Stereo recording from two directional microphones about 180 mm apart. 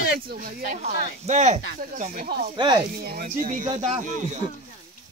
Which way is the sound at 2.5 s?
25° right (ahead or behind).